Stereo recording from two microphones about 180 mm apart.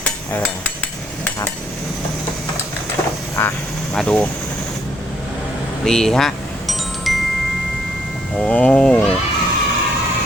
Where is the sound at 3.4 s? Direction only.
10° left (ahead or behind).